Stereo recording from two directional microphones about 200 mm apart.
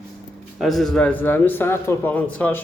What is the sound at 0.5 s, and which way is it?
A man's voice, centre (ahead or behind).